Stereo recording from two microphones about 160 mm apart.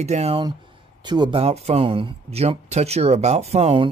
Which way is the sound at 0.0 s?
40° right (ahead or behind).